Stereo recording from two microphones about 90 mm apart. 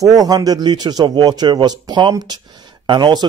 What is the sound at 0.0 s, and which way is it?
A man's voice, 45° right (ahead or behind).